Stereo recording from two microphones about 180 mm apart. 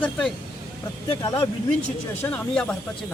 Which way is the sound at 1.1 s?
25° left (ahead or behind).